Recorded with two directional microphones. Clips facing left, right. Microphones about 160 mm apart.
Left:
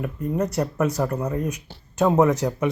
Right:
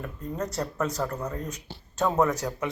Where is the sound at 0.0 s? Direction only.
15° left (ahead or behind).